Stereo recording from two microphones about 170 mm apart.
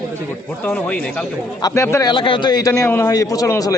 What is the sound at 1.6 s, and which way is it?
Speech, 20° left (ahead or behind).